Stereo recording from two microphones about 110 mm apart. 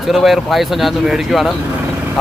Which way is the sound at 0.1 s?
Centre (ahead or behind).